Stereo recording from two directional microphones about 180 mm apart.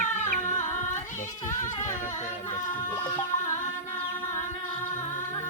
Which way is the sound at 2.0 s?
45° left (ahead or behind).